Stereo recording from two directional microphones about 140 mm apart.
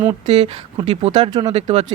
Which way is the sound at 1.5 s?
50° right (ahead or behind).